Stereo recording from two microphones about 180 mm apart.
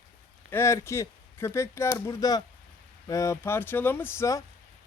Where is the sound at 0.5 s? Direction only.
15° left (ahead or behind).